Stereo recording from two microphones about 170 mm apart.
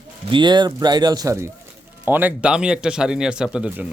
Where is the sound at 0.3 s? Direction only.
25° right (ahead or behind).